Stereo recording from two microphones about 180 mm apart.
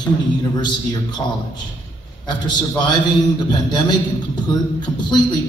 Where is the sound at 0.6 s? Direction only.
25° left (ahead or behind).